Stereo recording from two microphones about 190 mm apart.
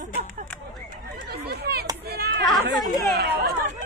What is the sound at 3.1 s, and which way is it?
Speech, 55° right (ahead or behind).